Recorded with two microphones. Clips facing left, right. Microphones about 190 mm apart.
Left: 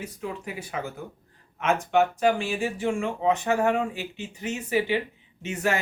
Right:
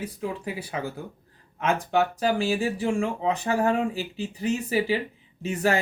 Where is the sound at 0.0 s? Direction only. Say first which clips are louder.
Right 3 dB; 30° right (ahead or behind).